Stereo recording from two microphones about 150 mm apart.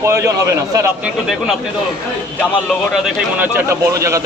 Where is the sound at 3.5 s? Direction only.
20° right (ahead or behind).